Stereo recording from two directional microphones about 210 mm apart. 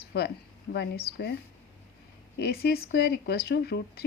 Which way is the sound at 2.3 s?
50° left (ahead or behind).